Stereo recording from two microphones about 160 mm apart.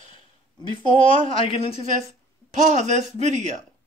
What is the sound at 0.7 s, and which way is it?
Speech, 35° left (ahead or behind).